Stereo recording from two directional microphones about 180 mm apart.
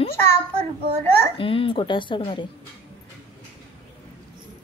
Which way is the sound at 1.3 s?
30° left (ahead or behind).